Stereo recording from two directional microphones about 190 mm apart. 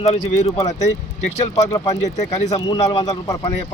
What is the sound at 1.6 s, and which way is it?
Speech, 20° left (ahead or behind).